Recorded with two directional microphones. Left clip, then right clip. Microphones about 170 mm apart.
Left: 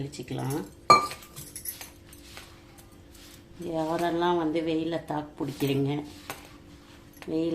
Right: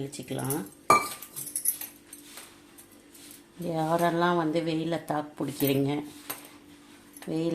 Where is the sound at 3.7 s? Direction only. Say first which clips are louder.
Right 2 dB; 45° right (ahead or behind).